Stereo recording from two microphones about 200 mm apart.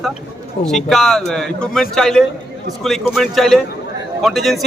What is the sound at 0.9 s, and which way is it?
A man's voice, centre (ahead or behind).